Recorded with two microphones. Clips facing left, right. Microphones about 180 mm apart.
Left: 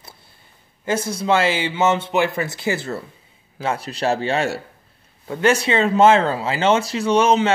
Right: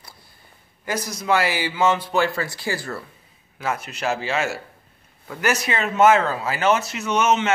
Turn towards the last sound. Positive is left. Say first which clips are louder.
# left 4 dB
turn(degrees=30)  # may be behind; listen again after turning